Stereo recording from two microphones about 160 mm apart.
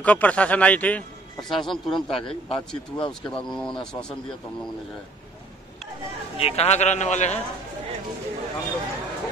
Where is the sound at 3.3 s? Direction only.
5° left (ahead or behind).